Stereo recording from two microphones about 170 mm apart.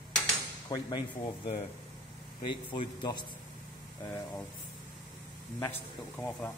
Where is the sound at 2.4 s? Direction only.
30° left (ahead or behind).